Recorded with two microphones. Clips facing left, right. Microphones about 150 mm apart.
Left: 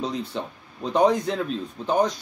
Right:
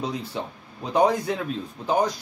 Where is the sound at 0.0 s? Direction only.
5° right (ahead or behind).